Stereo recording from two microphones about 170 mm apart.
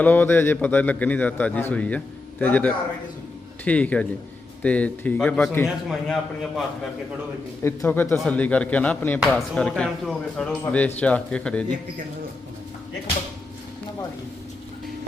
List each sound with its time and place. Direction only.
0.0 s a man's voice: 10° left (ahead or behind)
7.6 s a man's voice: 15° left (ahead or behind)